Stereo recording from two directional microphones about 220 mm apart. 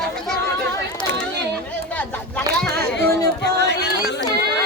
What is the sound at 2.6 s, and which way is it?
Speech, 10° left (ahead or behind).